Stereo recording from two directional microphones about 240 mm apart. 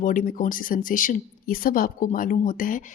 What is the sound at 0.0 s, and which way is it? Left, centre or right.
Speech, left.